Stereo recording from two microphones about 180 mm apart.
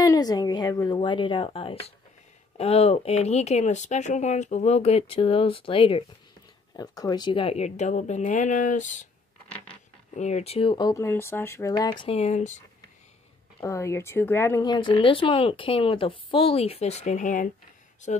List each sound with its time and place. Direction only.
0.0 s speech: 20° left (ahead or behind); by 9.0 s 45° left (ahead or behind)
10.1 s speech: 40° left (ahead or behind); by 12.1 s 20° left (ahead or behind)
12.1 s speech: 40° left (ahead or behind)
13.6 s speech: 15° left (ahead or behind); by 17.5 s 45° left (ahead or behind)